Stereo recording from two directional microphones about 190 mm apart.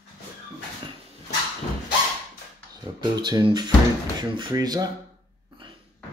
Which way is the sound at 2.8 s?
25° right (ahead or behind).